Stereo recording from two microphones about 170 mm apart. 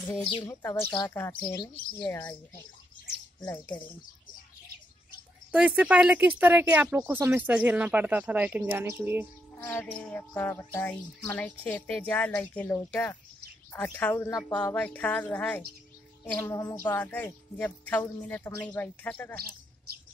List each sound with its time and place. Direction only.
0.4 s speech: 15° left (ahead or behind)
3.4 s speech: 10° left (ahead or behind)
5.5 s speech: 5° right (ahead or behind)
9.7 s speech: 10° left (ahead or behind)